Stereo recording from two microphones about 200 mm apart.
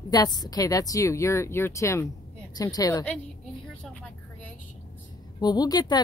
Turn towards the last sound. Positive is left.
turn(degrees=20)  # may be behind; listen again after turning